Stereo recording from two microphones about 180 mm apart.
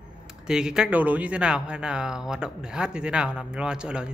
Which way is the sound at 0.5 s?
5° right (ahead or behind).